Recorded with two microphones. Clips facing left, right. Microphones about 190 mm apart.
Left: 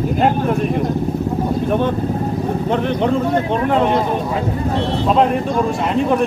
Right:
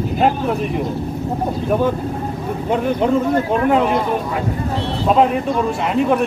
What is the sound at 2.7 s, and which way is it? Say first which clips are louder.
Speech: right 2 dB; 5° right (ahead or behind).